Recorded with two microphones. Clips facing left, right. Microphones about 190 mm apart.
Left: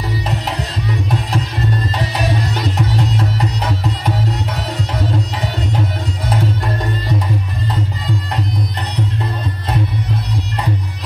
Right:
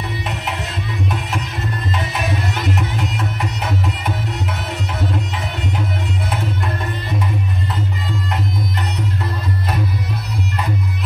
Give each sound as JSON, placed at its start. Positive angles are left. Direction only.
{"t": 0.5, "sound": "music", "side_deg": 40}